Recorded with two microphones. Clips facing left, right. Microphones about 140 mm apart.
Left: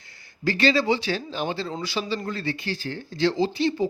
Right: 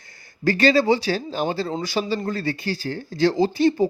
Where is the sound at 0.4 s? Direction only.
45° right (ahead or behind).